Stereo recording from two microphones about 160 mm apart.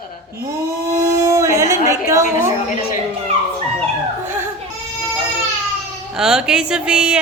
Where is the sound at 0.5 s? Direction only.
20° right (ahead or behind).